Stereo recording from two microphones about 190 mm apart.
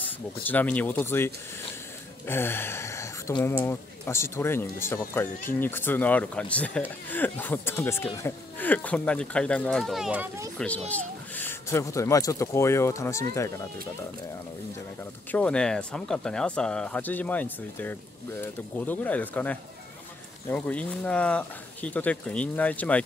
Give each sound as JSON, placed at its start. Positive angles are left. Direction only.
{"t": 0.0, "sound": "speech", "side_deg": 10}
{"t": 10.9, "sound": "speech", "side_deg": 10}
{"t": 15.3, "sound": "speech", "side_deg": 5}